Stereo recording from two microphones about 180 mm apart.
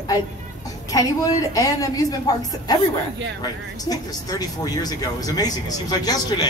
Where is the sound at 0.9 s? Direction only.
20° left (ahead or behind).